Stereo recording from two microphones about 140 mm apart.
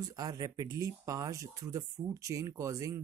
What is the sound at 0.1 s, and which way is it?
Speech, 25° right (ahead or behind).